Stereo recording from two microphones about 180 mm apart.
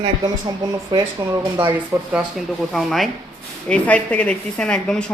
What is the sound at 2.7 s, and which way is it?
A woman's voice, centre (ahead or behind).